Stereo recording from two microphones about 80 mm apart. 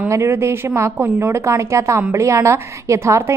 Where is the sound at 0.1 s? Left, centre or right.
Right.